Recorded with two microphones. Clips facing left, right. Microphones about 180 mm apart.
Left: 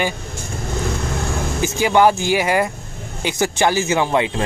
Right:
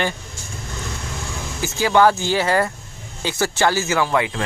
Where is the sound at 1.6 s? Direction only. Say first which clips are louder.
Left 1 dB; 15° left (ahead or behind).